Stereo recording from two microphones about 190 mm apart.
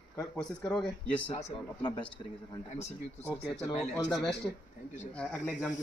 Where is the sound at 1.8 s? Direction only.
20° left (ahead or behind).